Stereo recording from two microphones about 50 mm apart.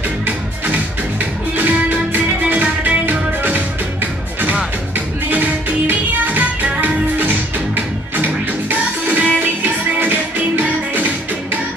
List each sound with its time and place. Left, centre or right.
1.6 s music: right
5.3 s music: right
9.9 s music: right